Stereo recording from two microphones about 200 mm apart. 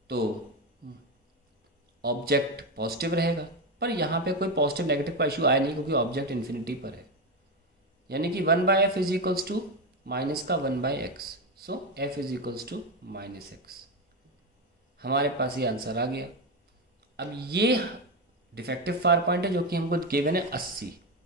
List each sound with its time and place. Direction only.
2.0 s speech: 50° right (ahead or behind)
8.1 s speech: 50° right (ahead or behind)
15.0 s speech: 50° right (ahead or behind)